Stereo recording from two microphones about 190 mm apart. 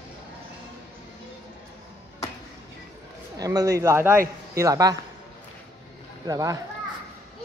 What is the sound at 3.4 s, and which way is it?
A man's voice, 20° right (ahead or behind).